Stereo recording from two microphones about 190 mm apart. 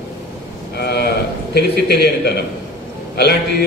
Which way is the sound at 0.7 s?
60° left (ahead or behind).